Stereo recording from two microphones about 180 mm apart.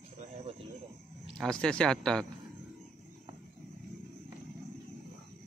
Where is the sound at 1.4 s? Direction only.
5° left (ahead or behind).